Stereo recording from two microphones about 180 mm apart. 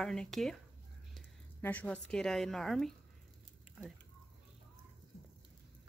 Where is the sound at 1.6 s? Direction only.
10° left (ahead or behind).